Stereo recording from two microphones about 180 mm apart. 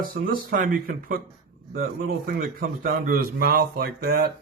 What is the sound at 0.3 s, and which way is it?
Speech, 50° right (ahead or behind).